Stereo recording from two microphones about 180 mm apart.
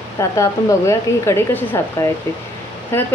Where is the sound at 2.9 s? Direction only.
15° left (ahead or behind).